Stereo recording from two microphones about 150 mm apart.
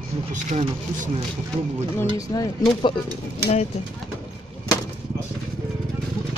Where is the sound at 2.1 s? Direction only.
25° left (ahead or behind).